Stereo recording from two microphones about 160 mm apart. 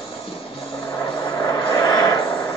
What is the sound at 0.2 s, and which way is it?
Vehicle, 35° left (ahead or behind).